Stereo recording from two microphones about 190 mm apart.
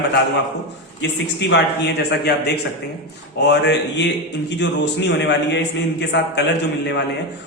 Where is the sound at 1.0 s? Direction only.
70° left (ahead or behind).